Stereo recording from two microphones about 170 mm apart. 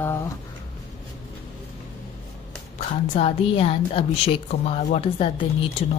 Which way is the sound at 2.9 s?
35° left (ahead or behind).